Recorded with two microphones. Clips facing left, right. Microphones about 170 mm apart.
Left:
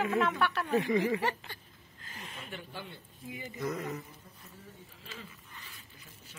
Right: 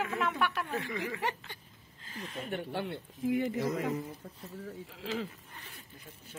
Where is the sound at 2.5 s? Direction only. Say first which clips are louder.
Right 10 dB; 65° right (ahead or behind); by 5.3 s 90° right.